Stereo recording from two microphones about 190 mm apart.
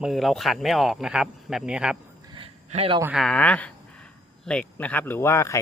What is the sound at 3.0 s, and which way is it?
Speech, 10° right (ahead or behind).